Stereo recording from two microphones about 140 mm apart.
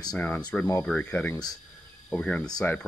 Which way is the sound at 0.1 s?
15° left (ahead or behind).